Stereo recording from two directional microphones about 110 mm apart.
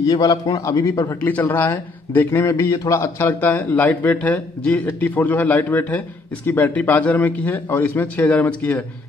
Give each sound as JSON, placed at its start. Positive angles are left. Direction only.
{"t": 0.0, "sound": "a man's voice", "side_deg": 35}
{"t": 1.5, "sound": "speech", "side_deg": 15}